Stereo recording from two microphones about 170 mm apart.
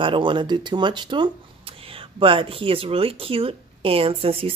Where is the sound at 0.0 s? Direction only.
30° right (ahead or behind).